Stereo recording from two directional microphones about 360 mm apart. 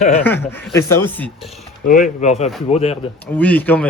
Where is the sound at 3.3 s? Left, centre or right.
Centre.